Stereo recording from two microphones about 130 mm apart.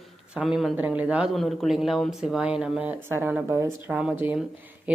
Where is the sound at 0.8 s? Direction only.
10° right (ahead or behind).